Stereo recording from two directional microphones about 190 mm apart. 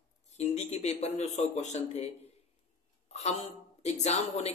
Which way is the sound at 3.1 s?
35° left (ahead or behind).